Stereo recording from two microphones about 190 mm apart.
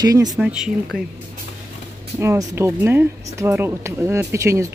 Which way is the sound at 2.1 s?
15° right (ahead or behind).